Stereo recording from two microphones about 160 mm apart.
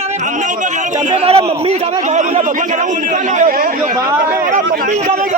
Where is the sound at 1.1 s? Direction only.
40° right (ahead or behind); by 3.6 s 55° right (ahead or behind).